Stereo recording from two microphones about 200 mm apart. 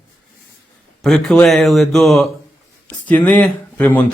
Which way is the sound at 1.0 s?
Centre (ahead or behind).